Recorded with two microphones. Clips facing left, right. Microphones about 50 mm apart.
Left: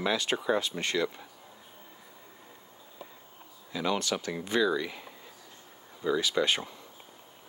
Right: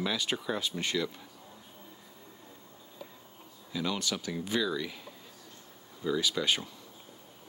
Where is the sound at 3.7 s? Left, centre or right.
Left.